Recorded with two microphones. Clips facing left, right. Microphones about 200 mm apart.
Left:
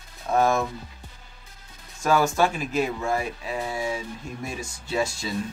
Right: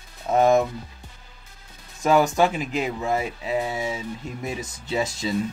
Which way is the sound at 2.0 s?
20° right (ahead or behind).